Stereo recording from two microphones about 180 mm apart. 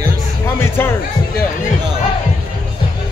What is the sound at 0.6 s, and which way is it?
Speech, 15° left (ahead or behind).